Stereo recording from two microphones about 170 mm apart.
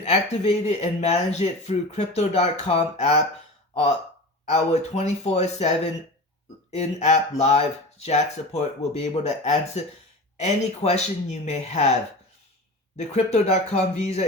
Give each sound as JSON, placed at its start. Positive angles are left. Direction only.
{"t": 0.0, "sound": "speech", "side_deg": 40}
{"t": 4.4, "sound": "speech", "side_deg": 40}
{"t": 13.0, "sound": "speech", "side_deg": 40}